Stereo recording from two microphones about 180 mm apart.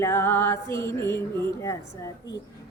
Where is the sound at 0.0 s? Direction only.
15° left (ahead or behind).